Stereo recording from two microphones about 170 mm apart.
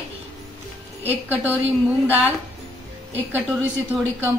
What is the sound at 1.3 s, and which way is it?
A woman's voice, 10° right (ahead or behind).